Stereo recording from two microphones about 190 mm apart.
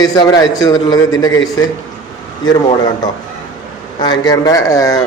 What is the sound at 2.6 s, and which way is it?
A man's voice, 20° left (ahead or behind).